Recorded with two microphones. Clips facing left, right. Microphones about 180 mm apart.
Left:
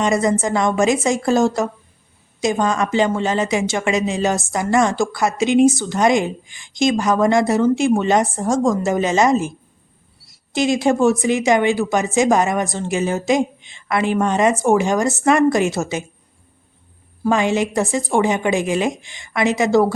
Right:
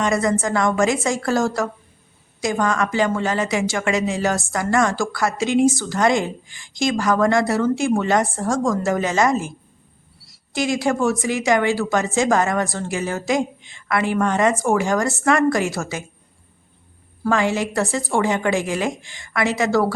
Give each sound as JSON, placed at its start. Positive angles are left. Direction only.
{"t": 0.0, "sound": "a woman's voice", "side_deg": 20}
{"t": 10.5, "sound": "a woman's voice", "side_deg": 20}
{"t": 17.2, "sound": "a woman's voice", "side_deg": 20}